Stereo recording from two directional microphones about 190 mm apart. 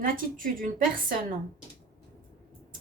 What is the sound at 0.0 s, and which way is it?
Speech, 45° right (ahead or behind).